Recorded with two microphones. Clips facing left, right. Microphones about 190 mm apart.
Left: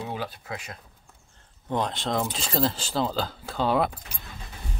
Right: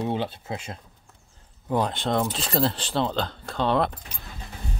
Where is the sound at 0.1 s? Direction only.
25° right (ahead or behind).